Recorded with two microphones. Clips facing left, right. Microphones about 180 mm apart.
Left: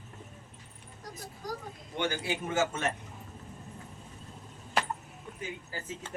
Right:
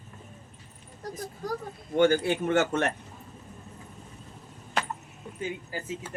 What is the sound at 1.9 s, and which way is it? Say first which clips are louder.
Speech: right 10 dB; 50° right (ahead or behind).